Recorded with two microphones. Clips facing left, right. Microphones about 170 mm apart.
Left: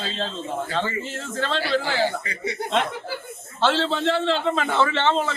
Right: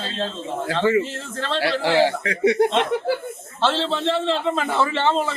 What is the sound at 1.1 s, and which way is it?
Speech, centre (ahead or behind).